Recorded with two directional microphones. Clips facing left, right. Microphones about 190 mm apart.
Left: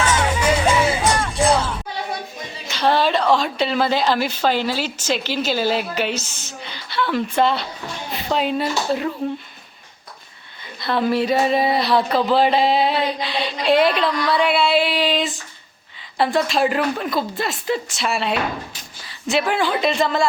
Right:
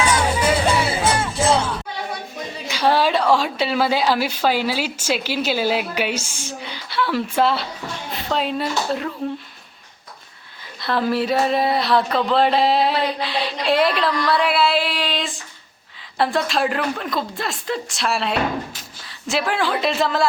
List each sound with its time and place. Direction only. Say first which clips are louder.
0.0 s music: even; 10° right (ahead or behind)
0.7 s music: left 1 dB; 30° right (ahead or behind)
1.1 s music: left 1 dB; 5° right (ahead or behind)
2.6 s a woman's voice: even; 10° right (ahead or behind)
10.8 s speech: left 1 dB; centre (ahead or behind)